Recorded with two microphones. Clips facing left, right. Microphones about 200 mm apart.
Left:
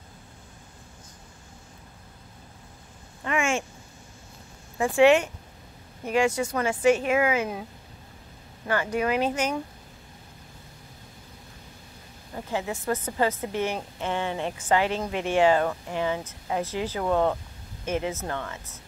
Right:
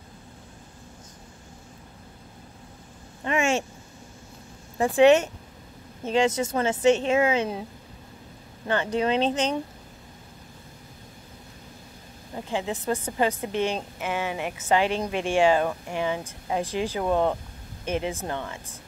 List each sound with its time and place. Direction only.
3.3 s a sound: 20° right (ahead or behind)
4.9 s speech: 20° right (ahead or behind)
8.6 s speech: 25° right (ahead or behind)
12.4 s speech: 20° right (ahead or behind)